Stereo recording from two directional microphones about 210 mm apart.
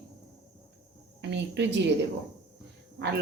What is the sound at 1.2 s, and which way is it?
Speech, 55° right (ahead or behind).